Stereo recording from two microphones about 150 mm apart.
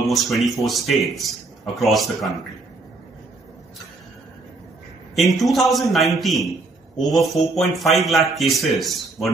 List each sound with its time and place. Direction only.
0.1 s speech: centre (ahead or behind)
5.1 s speech: centre (ahead or behind)